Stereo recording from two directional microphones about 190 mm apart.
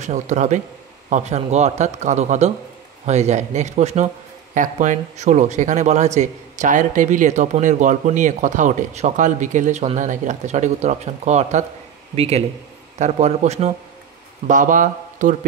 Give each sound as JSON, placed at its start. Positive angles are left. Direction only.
{"t": 0.0, "sound": "speech", "side_deg": -40}